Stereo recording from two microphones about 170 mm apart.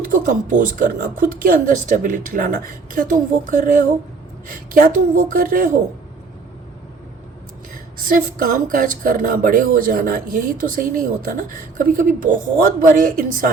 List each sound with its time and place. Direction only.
0.0 s speech: 50° right (ahead or behind)
7.7 s speech: 55° right (ahead or behind)